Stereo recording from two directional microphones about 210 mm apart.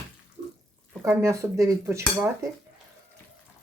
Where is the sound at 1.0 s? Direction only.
15° right (ahead or behind).